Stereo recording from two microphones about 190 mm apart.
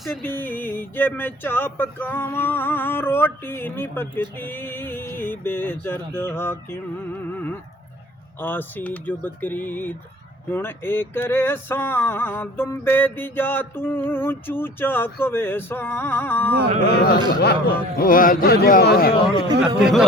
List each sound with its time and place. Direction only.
0.0 s male singing: 10° left (ahead or behind)
16.9 s a man's voice: 55° left (ahead or behind)